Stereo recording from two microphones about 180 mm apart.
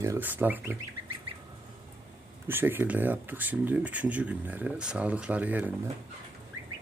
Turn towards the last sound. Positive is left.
turn(degrees=-10)  # may be behind; listen again after turning